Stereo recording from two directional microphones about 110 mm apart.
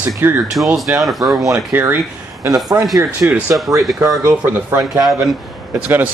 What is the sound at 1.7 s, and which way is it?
Speech, 20° right (ahead or behind).